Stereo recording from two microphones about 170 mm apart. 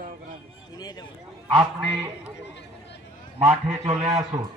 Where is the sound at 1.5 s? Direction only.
30° right (ahead or behind).